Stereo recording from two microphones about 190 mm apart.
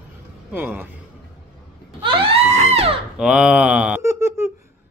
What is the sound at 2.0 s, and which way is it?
Screaming, 30° right (ahead or behind).